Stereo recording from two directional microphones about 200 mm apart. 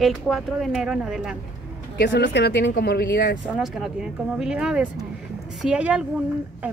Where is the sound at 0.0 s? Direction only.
Centre (ahead or behind).